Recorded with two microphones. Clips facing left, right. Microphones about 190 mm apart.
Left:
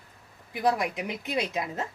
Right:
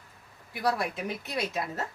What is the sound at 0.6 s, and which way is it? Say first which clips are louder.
Speech: left 3 dB; 15° left (ahead or behind).